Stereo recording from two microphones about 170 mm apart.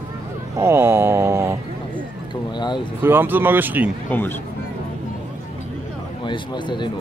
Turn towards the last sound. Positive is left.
turn(degrees=25)  # may be behind; listen again after turning